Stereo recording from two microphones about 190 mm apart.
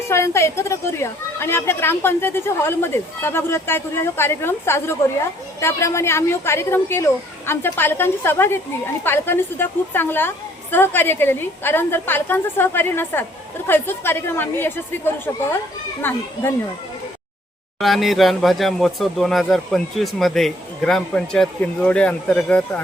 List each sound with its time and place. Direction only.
0.1 s a woman's voice: 15° left (ahead or behind)
17.7 s speech: centre (ahead or behind)